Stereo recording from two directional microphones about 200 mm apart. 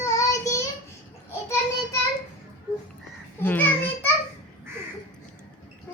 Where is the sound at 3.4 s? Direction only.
10° left (ahead or behind).